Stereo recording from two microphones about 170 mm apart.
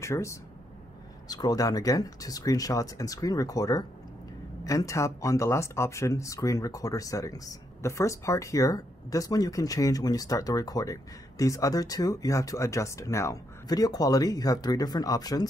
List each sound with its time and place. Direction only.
0.0 s speech: 15° left (ahead or behind)